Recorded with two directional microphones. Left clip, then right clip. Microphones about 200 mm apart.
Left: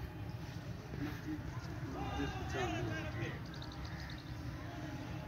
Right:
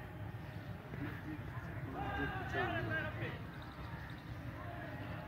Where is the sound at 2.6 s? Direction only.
20° right (ahead or behind).